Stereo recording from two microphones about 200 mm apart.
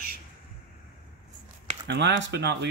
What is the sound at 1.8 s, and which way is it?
Speech, 60° right (ahead or behind).